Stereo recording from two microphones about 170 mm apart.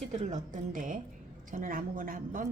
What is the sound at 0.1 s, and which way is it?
A woman's voice, 45° right (ahead or behind).